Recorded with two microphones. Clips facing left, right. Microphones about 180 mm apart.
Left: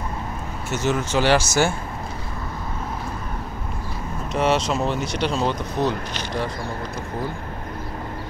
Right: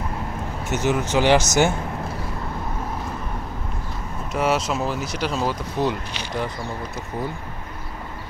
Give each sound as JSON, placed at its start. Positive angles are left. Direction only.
{"t": 0.7, "sound": "speech", "side_deg": -15}
{"t": 4.3, "sound": "speech", "side_deg": -5}